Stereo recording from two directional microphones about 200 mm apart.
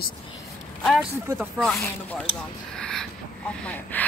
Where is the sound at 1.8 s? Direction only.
10° left (ahead or behind).